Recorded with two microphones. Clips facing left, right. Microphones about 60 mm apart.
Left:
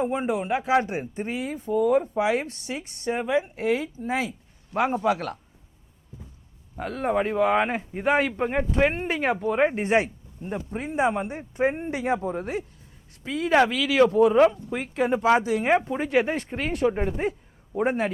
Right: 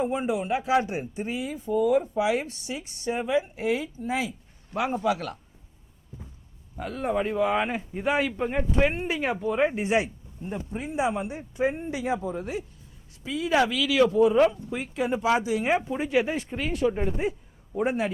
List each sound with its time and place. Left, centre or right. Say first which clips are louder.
0.0 s speech: left 1 dB; left
6.7 s speech: left 2 dB; left